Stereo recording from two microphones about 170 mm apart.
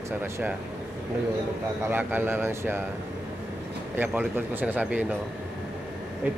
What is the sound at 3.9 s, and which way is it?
A man's voice, 10° right (ahead or behind).